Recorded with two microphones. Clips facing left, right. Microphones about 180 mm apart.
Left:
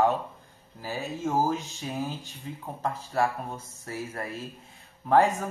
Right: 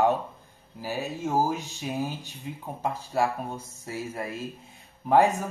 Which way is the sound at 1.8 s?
10° right (ahead or behind).